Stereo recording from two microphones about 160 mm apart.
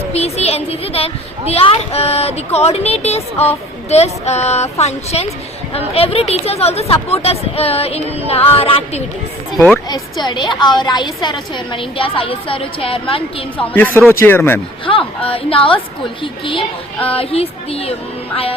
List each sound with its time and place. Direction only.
0.1 s a woman's voice: 40° left (ahead or behind)
9.6 s speech: 10° left (ahead or behind)
9.9 s a woman's voice: 30° left (ahead or behind)
13.6 s speech: 10° left (ahead or behind)
15.3 s a woman's voice: 35° left (ahead or behind)